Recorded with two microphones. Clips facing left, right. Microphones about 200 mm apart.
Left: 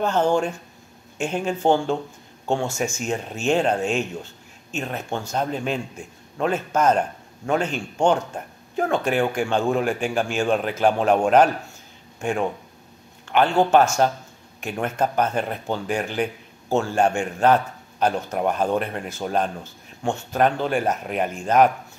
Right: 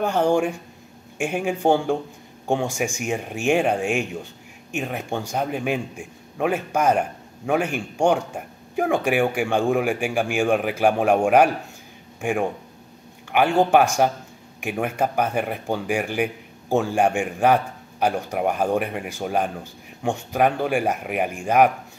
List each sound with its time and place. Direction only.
0.0 s speech: 15° right (ahead or behind)